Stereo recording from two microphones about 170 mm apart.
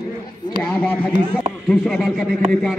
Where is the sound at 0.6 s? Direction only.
10° left (ahead or behind).